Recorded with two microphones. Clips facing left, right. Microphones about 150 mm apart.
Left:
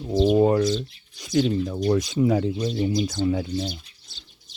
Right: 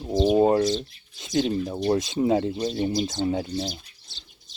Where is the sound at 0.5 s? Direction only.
35° right (ahead or behind).